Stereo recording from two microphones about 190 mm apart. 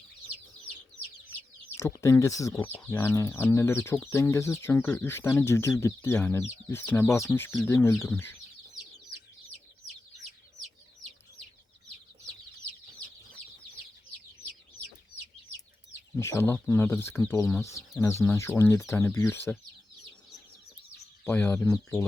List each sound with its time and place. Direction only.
1.7 s speech: 15° left (ahead or behind)
16.1 s speech: 15° left (ahead or behind)
21.2 s speech: 10° left (ahead or behind)